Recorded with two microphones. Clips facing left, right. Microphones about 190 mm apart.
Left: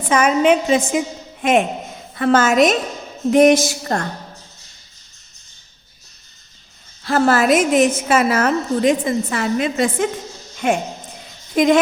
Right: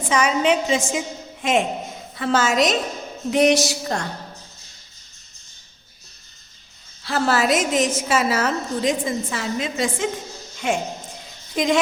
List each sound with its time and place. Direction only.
0.1 s a woman's voice: 50° left (ahead or behind)
7.0 s a woman's voice: 50° left (ahead or behind)